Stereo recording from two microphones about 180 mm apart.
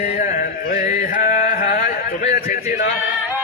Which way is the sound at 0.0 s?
45° left (ahead or behind).